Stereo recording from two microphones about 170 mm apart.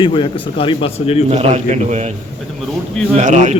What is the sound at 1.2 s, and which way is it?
Speech, 40° right (ahead or behind).